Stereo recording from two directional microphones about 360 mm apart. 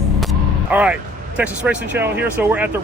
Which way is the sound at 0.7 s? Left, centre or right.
Centre.